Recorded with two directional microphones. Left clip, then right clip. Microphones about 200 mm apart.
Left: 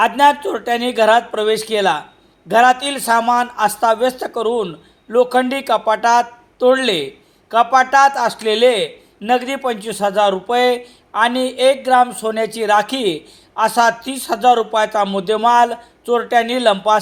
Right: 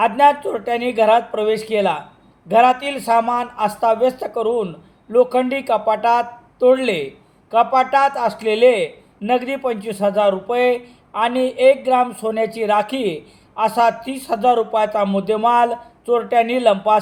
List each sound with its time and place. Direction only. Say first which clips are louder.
0.0 s a man's voice: left 1 dB; 20° left (ahead or behind)